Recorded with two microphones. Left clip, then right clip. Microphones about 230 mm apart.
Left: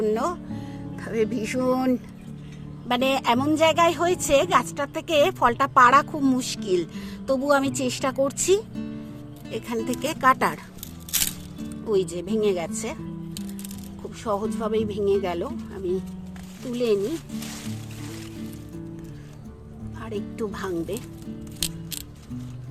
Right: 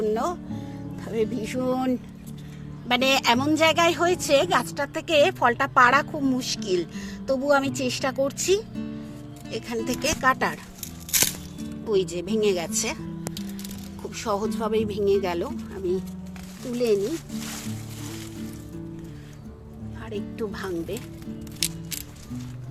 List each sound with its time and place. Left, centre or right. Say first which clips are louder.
0.0 s music: left 1 dB; centre
2.9 s speech: right 1 dB; centre
8.7 s music: even; centre
9.5 s speech: left 1 dB; centre
11.9 s speech: even; centre
14.2 s speech: even; centre
20.1 s speech: left 1 dB; centre